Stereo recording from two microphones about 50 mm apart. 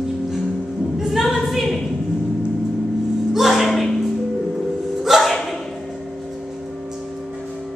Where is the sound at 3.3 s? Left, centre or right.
Centre.